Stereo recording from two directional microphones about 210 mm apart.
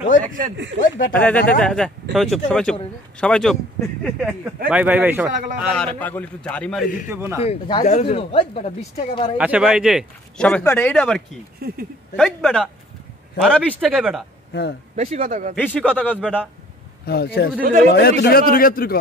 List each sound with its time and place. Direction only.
0.7 s speech: 40° left (ahead or behind)
1.1 s a man's voice: 5° left (ahead or behind)
7.1 s a man's voice: 10° right (ahead or behind)
7.4 s speech: 25° left (ahead or behind)
9.4 s a man's voice: 5° right (ahead or behind)
11.6 s speech: 45° right (ahead or behind)
12.2 s a man's voice: centre (ahead or behind)
14.5 s speech: 55° left (ahead or behind)
15.0 s a man's voice: 30° right (ahead or behind)
15.6 s speech: 10° left (ahead or behind)
17.0 s a man's voice: 50° left (ahead or behind)
17.6 s a man's voice: 40° right (ahead or behind)
17.9 s a man's voice: 45° left (ahead or behind)